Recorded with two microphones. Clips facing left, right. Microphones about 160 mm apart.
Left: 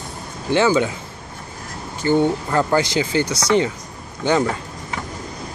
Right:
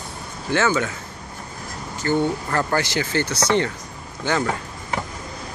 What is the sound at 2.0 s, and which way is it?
Speech, 15° left (ahead or behind).